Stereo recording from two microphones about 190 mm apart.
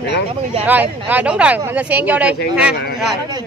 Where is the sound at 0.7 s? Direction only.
10° right (ahead or behind).